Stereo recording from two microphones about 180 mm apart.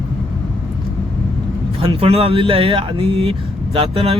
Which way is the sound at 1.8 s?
30° right (ahead or behind).